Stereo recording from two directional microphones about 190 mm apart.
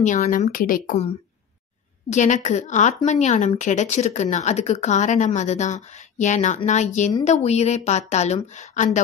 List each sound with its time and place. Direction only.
0.0 s speech: 40° left (ahead or behind)
2.0 s speech: 40° left (ahead or behind)